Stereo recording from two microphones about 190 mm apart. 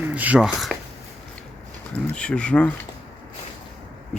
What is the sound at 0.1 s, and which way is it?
Speech, 5° right (ahead or behind).